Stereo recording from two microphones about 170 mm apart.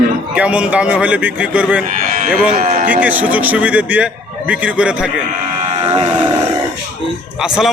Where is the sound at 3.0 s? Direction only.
10° right (ahead or behind).